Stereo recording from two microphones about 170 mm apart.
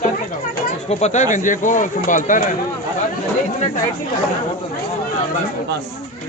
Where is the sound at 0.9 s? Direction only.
40° left (ahead or behind).